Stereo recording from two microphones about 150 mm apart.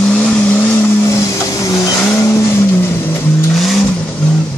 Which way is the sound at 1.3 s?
25° left (ahead or behind).